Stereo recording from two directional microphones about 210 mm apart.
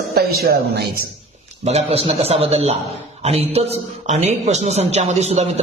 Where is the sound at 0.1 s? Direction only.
50° right (ahead or behind).